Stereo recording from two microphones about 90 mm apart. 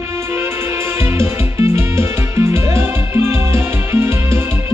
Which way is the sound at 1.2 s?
25° right (ahead or behind).